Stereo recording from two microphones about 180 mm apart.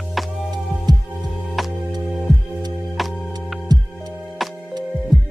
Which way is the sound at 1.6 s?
Centre (ahead or behind).